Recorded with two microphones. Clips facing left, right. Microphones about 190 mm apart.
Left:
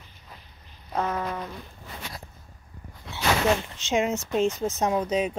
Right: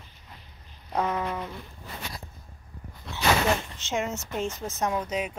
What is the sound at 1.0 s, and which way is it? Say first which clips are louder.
Speech: even; 10° right (ahead or behind).